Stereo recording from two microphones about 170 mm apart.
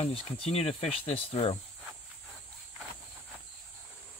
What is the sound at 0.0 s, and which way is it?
Speech, 35° left (ahead or behind).